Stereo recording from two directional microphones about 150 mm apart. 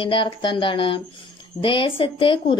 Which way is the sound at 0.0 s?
35° left (ahead or behind).